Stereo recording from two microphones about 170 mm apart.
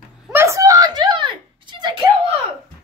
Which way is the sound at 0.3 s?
15° right (ahead or behind).